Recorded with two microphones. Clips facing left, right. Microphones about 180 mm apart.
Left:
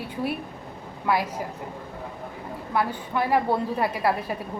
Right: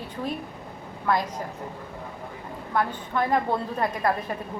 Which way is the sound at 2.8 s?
10° left (ahead or behind).